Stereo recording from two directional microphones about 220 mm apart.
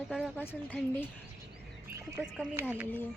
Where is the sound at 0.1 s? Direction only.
5° left (ahead or behind).